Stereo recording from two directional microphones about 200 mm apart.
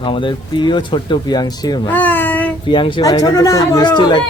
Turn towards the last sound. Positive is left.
turn(degrees=25)  # may be behind; listen again after turning